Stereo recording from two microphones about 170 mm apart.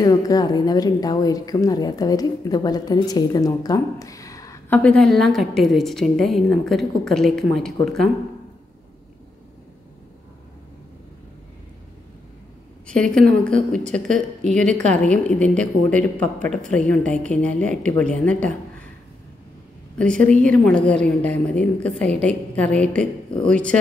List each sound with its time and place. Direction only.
0.0 s a woman's voice: 20° left (ahead or behind); by 8.1 s centre (ahead or behind)
12.8 s a woman's voice: 5° left (ahead or behind)
20.0 s a woman's voice: 5° left (ahead or behind)